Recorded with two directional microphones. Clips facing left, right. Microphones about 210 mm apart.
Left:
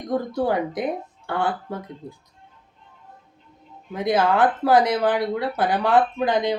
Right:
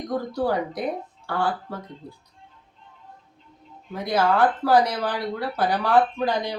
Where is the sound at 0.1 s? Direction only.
20° left (ahead or behind).